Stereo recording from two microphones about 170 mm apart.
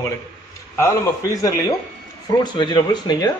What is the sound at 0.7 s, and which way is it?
A man's voice, 20° left (ahead or behind).